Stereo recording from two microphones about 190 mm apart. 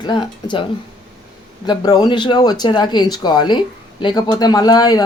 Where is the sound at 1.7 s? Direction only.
20° left (ahead or behind).